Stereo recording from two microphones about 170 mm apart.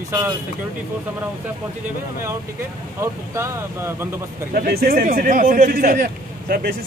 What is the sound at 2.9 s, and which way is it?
Speech, 15° right (ahead or behind).